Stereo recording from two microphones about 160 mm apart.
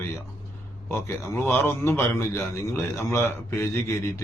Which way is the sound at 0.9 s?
15° left (ahead or behind).